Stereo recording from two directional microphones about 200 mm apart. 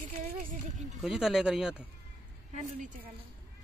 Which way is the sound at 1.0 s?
Centre (ahead or behind).